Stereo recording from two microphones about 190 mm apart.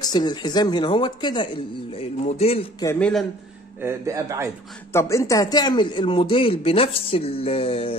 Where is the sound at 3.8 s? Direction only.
15° right (ahead or behind).